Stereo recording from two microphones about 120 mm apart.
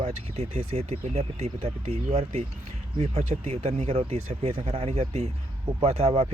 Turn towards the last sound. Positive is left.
turn(degrees=-55)  # may be behind; listen again after turning